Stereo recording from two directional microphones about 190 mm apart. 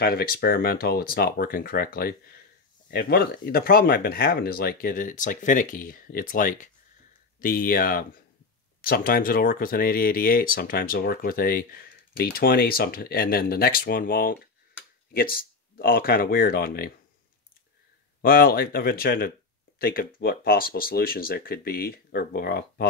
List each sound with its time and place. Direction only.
0.0 s speech: 50° left (ahead or behind)
18.2 s speech: 50° left (ahead or behind)